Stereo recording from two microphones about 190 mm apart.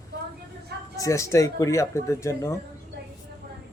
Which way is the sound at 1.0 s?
15° left (ahead or behind).